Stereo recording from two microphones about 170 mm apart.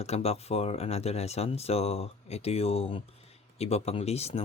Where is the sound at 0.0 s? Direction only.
40° left (ahead or behind).